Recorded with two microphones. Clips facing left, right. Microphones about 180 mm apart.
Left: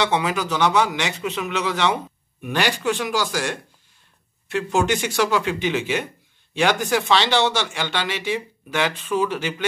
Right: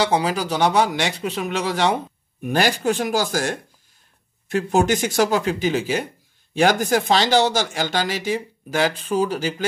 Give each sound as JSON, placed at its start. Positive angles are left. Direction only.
{"t": 0.0, "sound": "speech", "side_deg": -35}